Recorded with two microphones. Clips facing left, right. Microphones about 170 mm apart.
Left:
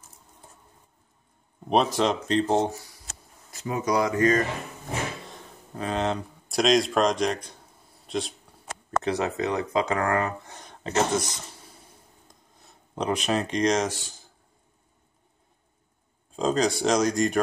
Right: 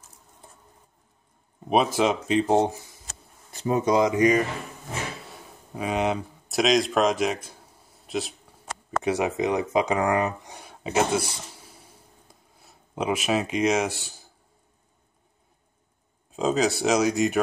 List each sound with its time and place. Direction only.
1.7 s speech: 5° right (ahead or behind)
3.5 s speech: 30° right (ahead or behind); by 8.4 s 5° right (ahead or behind)
9.0 s speech: 15° right (ahead or behind)
12.3 s a sound: 5° right (ahead or behind)
16.3 s speech: 5° right (ahead or behind)